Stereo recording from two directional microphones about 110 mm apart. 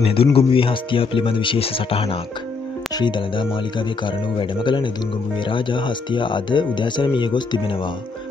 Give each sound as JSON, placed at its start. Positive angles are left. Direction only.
{"t": 0.0, "sound": "speech", "side_deg": 55}
{"t": 3.0, "sound": "speech", "side_deg": 45}